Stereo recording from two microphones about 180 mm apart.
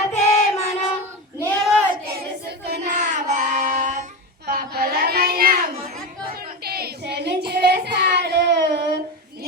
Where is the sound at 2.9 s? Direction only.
45° right (ahead or behind).